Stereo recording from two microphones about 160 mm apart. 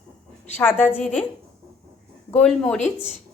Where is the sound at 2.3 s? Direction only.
5° left (ahead or behind).